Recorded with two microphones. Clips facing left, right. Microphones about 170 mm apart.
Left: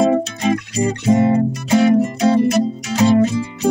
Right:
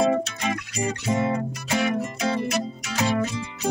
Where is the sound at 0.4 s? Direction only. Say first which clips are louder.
Left 9 dB; 35° left (ahead or behind).